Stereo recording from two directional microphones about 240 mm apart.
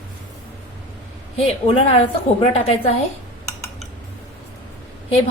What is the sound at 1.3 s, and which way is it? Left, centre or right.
A woman's voice, left.